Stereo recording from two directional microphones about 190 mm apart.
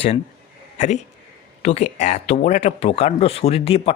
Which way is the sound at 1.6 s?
35° left (ahead or behind).